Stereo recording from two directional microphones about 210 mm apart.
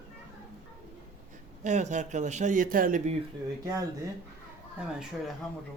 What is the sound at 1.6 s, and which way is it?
A man's voice, 35° right (ahead or behind).